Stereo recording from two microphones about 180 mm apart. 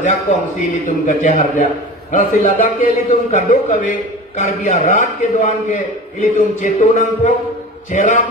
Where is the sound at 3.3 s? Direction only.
40° left (ahead or behind).